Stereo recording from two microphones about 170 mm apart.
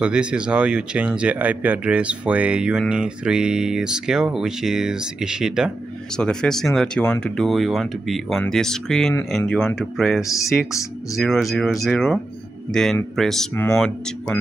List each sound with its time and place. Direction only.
0.0 s speech: 5° right (ahead or behind)